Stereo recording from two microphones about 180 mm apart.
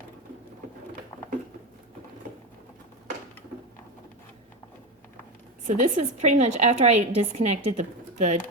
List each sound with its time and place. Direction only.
5.6 s a woman's voice: 40° right (ahead or behind)